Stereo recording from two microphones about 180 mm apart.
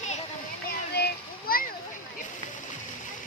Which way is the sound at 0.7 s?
60° left (ahead or behind).